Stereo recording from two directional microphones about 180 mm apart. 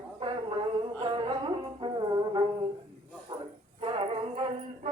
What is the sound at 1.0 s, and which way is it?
Music, 25° right (ahead or behind).